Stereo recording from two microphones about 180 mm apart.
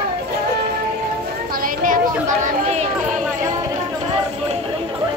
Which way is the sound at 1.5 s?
50° right (ahead or behind).